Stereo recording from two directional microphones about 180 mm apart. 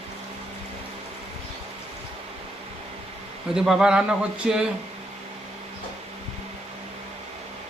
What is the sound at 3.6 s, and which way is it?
Speech, 5° right (ahead or behind).